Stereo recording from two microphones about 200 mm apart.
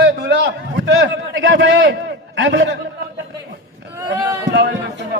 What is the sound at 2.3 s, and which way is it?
Speech, 70° right (ahead or behind).